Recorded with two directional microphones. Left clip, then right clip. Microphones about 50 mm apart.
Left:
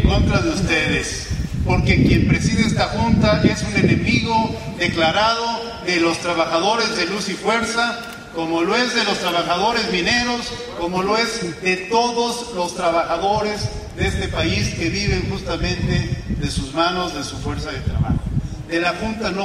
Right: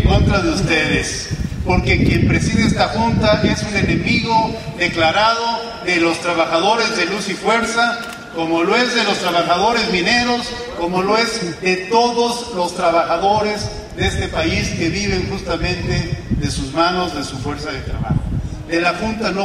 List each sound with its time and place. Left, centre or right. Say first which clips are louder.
0.1 s a man's voice: right 5 dB; centre
18.7 s a man's voice: right 3 dB; centre